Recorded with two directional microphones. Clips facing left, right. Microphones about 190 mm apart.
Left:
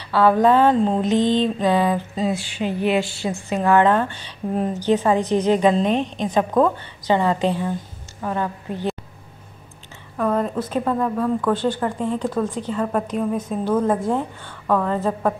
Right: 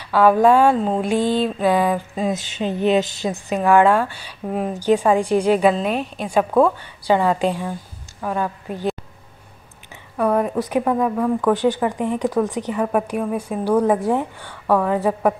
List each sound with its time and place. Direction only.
0.0 s a woman's voice: 10° right (ahead or behind)
10.1 s a woman's voice: 10° right (ahead or behind)